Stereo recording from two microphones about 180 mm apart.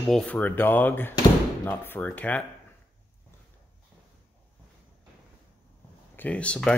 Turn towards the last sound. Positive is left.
turn(degrees=5)  # may be behind; listen again after turning